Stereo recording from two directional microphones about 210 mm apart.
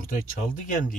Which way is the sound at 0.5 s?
40° left (ahead or behind).